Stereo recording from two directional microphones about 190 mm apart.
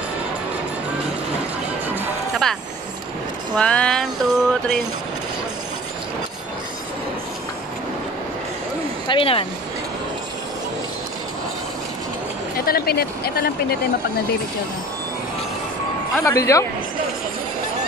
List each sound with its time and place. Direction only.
2.0 s music: centre (ahead or behind)
3.5 s a sound: 5° left (ahead or behind)
9.0 s speech: 25° left (ahead or behind)
12.5 s speech: 50° left (ahead or behind)
16.3 s a man's voice: 15° left (ahead or behind)